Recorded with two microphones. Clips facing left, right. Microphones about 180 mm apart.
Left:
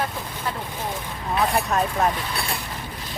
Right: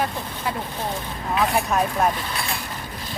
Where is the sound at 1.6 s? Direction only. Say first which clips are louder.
Right 1 dB; centre (ahead or behind).